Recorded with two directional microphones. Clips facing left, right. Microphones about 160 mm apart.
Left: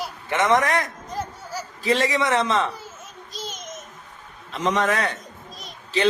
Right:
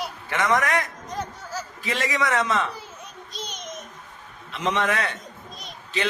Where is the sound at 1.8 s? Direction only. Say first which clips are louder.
Left 5 dB; 35° left (ahead or behind).